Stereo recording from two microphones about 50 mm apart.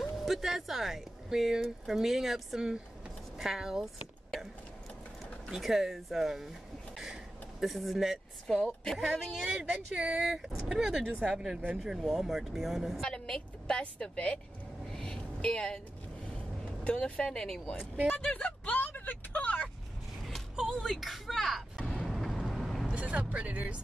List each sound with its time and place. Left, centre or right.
0.2 s speech: centre
5.5 s speech: centre
7.6 s speech: centre
8.5 s speech: centre
11.8 s speech: centre
13.0 s a woman's voice: centre
14.9 s vehicle: centre
15.5 s a woman's voice: left
18.1 s speech: left
20.5 s music: centre
20.9 s speech: centre
22.0 s vehicle: centre
22.9 s speech: right